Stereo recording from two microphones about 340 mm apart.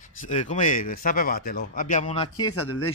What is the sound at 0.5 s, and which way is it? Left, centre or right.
A man's voice, left.